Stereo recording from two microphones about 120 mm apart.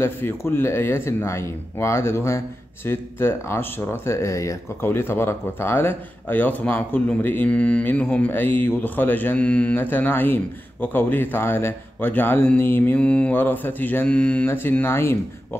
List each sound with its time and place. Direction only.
0.0 s speech: 20° left (ahead or behind)